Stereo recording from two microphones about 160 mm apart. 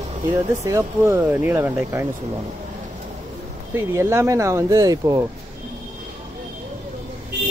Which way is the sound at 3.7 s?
15° right (ahead or behind).